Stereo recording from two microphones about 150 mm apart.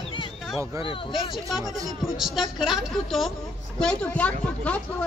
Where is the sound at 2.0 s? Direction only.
Centre (ahead or behind).